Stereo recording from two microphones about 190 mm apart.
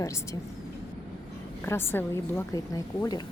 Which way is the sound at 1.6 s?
10° left (ahead or behind).